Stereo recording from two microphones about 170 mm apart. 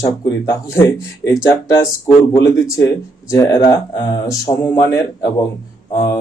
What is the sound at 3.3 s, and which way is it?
Speech, 20° left (ahead or behind).